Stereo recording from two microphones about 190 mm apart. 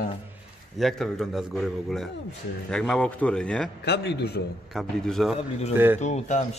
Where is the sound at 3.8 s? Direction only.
60° left (ahead or behind).